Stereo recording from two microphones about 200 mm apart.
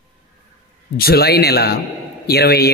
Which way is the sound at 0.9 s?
50° left (ahead or behind).